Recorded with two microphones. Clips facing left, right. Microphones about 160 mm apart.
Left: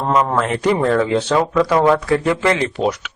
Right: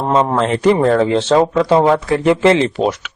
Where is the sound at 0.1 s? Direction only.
25° right (ahead or behind).